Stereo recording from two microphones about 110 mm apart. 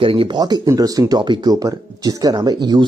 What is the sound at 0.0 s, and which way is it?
Speech, 55° right (ahead or behind).